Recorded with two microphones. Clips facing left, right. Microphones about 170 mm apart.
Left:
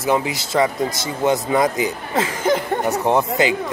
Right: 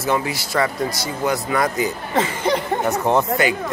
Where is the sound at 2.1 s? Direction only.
Centre (ahead or behind).